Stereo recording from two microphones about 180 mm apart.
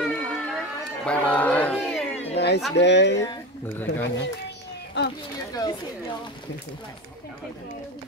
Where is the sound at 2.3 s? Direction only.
70° left (ahead or behind).